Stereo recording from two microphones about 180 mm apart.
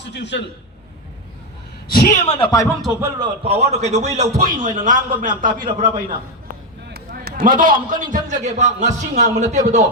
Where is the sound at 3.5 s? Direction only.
35° right (ahead or behind).